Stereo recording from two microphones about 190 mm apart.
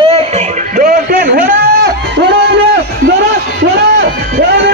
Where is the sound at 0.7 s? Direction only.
50° right (ahead or behind).